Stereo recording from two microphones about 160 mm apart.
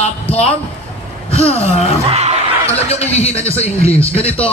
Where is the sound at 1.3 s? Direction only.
40° left (ahead or behind).